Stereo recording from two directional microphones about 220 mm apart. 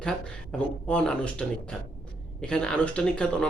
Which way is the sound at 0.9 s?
5° left (ahead or behind).